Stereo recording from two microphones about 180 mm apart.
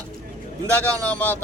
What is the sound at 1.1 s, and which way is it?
Speech, 10° left (ahead or behind).